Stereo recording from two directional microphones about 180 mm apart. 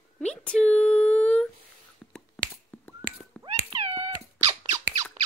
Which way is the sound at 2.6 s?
10° left (ahead or behind).